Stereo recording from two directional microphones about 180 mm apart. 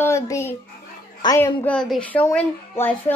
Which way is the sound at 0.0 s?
15° left (ahead or behind).